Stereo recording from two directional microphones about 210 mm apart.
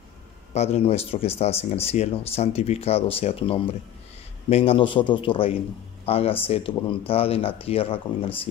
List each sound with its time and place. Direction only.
0.6 s speech: 30° left (ahead or behind)